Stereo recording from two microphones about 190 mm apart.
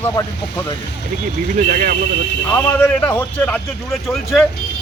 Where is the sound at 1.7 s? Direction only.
50° right (ahead or behind).